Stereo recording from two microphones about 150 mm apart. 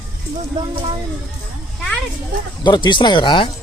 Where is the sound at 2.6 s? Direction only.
30° left (ahead or behind).